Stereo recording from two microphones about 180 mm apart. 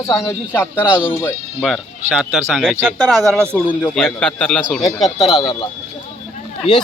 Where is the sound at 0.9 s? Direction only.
5° right (ahead or behind).